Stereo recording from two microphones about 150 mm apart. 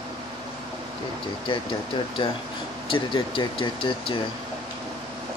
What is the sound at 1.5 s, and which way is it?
Speech, 35° left (ahead or behind).